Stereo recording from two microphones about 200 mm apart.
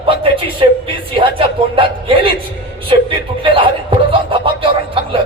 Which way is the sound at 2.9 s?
25° right (ahead or behind).